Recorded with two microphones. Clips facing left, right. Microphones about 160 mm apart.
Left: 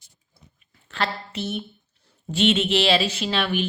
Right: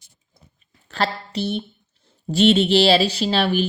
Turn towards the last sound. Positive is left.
turn(degrees=-35)  # may be behind; listen again after turning